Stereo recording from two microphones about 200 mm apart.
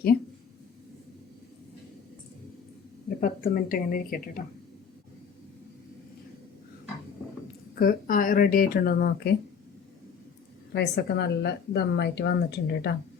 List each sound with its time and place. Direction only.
3.2 s speech: 45° left (ahead or behind)
7.8 s speech: 45° left (ahead or behind)
10.8 s a woman's voice: 55° left (ahead or behind)